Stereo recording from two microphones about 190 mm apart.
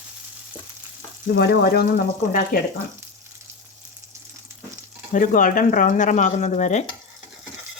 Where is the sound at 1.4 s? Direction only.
55° left (ahead or behind).